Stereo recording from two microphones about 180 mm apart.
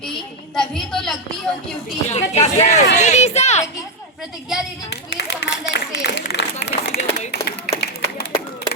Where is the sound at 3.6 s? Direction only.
5° right (ahead or behind).